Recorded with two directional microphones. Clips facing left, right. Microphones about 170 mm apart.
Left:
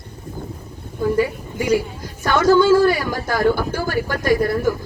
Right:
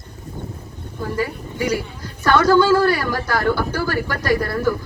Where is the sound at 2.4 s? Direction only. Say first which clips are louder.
Left 3 dB; 55° right (ahead or behind).